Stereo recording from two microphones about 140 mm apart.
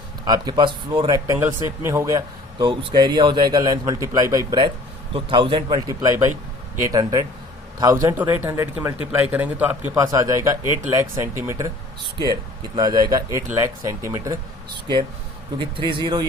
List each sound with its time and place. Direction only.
0.3 s a man's voice: 30° right (ahead or behind)
1.3 s a man's voice: 15° right (ahead or behind)
8.1 s speech: 15° right (ahead or behind)
9.9 s speech: 20° right (ahead or behind)
15.5 s a man's voice: 35° right (ahead or behind)